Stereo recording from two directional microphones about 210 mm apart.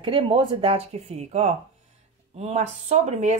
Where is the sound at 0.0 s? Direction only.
25° right (ahead or behind).